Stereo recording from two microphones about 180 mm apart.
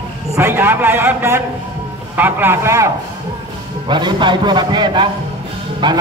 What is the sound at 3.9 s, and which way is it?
A man's voice, 25° right (ahead or behind).